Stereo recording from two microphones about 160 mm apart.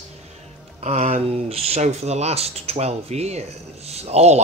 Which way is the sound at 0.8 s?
40° right (ahead or behind).